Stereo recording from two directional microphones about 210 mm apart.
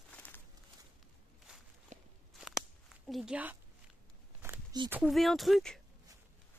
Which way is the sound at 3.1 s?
5° right (ahead or behind).